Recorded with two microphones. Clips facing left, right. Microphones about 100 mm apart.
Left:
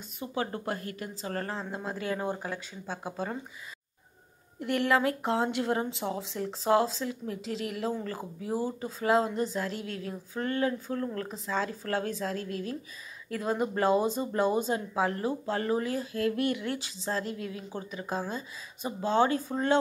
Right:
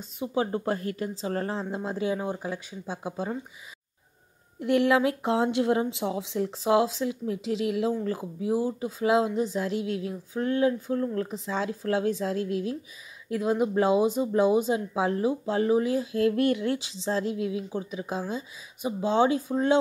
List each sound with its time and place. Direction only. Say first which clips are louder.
0.2 s speech: right 6 dB; 20° right (ahead or behind)
2.1 s speech: right 2 dB; centre (ahead or behind)
4.6 s speech: right 4 dB; 20° right (ahead or behind)